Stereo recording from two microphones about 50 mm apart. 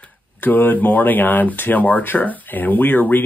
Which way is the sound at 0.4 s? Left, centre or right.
Left.